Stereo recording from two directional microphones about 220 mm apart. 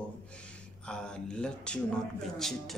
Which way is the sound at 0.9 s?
5° left (ahead or behind).